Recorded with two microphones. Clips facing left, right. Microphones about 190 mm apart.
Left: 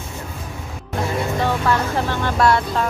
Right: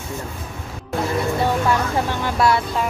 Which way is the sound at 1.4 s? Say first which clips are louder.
Left 1 dB; 10° right (ahead or behind).